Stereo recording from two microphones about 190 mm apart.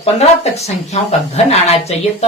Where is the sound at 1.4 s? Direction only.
35° left (ahead or behind).